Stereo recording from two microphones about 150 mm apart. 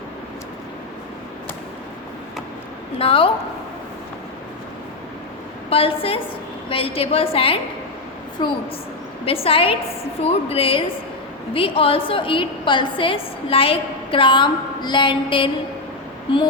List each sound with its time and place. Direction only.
3.0 s a woman's voice: 35° left (ahead or behind)
5.7 s a woman's voice: 40° left (ahead or behind)